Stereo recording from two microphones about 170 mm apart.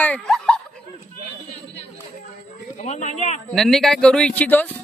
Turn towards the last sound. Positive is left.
turn(degrees=10)  # may be behind; listen again after turning